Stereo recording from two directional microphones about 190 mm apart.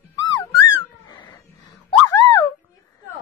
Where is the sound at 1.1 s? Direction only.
25° left (ahead or behind).